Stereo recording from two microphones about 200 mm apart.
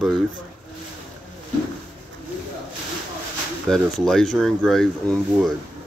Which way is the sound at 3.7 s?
Centre (ahead or behind).